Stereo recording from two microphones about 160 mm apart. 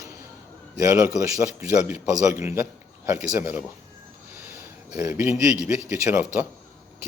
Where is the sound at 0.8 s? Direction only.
15° right (ahead or behind).